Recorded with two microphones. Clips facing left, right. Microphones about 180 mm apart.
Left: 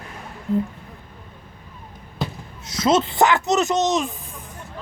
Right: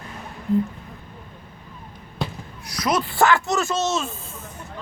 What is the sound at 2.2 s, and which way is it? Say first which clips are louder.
Basketball bounce: left 1 dB; centre (ahead or behind).